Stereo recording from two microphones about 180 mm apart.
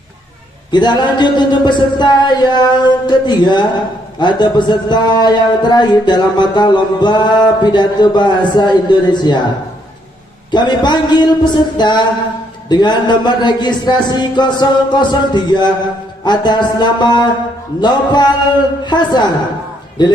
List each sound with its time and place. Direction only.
0.7 s speech: 25° left (ahead or behind)
10.5 s speech: 25° left (ahead or behind)